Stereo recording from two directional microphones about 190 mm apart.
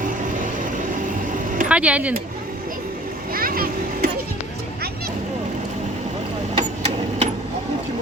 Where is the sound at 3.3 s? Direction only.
50° right (ahead or behind).